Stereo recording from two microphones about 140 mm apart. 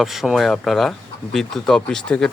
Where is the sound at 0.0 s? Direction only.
Centre (ahead or behind).